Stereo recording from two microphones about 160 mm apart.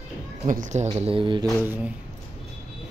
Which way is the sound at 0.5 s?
50° right (ahead or behind).